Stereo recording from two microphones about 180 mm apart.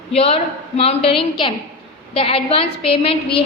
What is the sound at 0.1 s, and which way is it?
A woman's voice, 35° left (ahead or behind).